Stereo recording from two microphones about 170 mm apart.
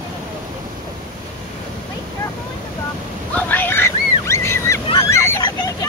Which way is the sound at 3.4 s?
10° left (ahead or behind).